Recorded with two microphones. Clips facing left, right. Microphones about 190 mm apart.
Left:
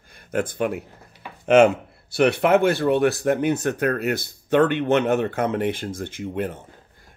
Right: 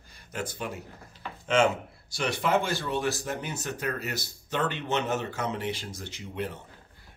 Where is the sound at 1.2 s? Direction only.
10° left (ahead or behind).